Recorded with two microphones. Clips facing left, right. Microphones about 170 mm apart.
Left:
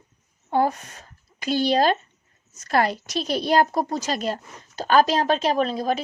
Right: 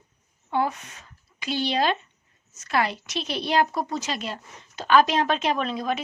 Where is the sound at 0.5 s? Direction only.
40° left (ahead or behind).